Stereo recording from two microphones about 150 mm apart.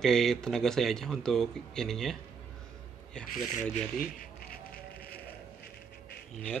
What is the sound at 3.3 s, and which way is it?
Speech, 60° left (ahead or behind).